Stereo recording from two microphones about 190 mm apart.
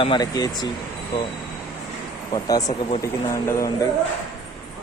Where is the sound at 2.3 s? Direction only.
20° left (ahead or behind).